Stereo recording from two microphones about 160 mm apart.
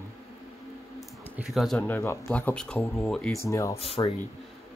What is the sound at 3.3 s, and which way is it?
Speech, 20° left (ahead or behind).